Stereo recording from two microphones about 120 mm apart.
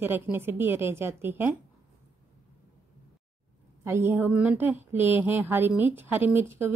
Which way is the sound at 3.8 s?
20° right (ahead or behind).